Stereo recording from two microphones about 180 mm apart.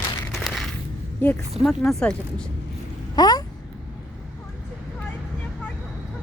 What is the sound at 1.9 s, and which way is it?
Speech, 5° left (ahead or behind).